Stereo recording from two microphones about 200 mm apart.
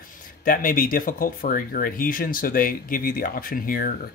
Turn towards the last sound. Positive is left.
turn(degrees=45)  # may be behind; listen again after turning